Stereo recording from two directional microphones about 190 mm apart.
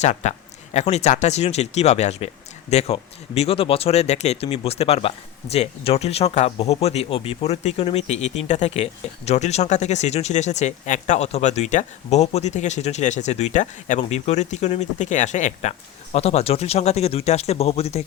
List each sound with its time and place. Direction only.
0.0 s speech: 35° left (ahead or behind)